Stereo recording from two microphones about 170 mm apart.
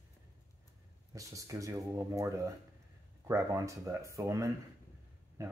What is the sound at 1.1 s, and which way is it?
Speech, 20° right (ahead or behind).